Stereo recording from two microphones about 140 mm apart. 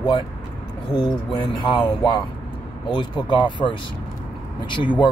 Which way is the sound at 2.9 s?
35° left (ahead or behind).